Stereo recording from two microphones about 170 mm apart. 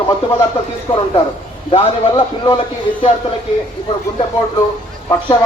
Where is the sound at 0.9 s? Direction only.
30° left (ahead or behind).